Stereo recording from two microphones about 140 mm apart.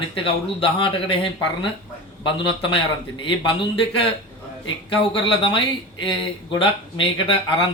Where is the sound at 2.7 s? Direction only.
35° left (ahead or behind).